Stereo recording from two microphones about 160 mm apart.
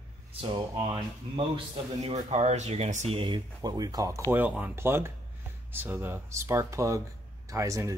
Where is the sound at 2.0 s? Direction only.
45° right (ahead or behind); by 4.2 s 20° right (ahead or behind).